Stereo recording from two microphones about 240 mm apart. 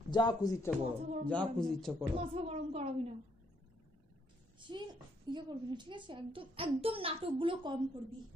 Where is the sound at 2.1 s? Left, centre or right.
Right.